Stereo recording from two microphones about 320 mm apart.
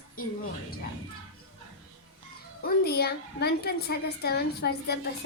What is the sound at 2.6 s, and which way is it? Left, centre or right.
A woman's voice, left.